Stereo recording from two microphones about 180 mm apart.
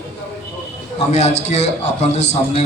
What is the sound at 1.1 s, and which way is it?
A man's voice, 40° left (ahead or behind).